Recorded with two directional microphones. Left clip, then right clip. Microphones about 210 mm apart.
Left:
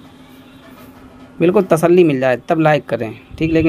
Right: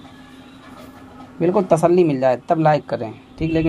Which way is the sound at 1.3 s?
25° left (ahead or behind).